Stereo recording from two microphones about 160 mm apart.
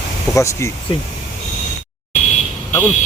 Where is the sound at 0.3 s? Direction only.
20° left (ahead or behind).